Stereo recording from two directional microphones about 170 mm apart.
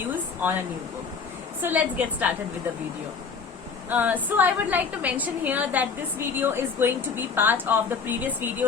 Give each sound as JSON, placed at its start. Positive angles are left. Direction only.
{"t": 1.6, "sound": "a woman's voice", "side_deg": -10}
{"t": 3.8, "sound": "a woman's voice", "side_deg": -10}